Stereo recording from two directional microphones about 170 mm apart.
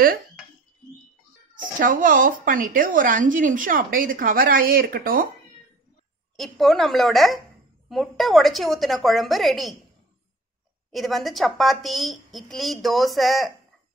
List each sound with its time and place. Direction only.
1.5 s speech: 50° right (ahead or behind)
6.3 s a woman's voice: centre (ahead or behind)
10.9 s a woman's voice: centre (ahead or behind)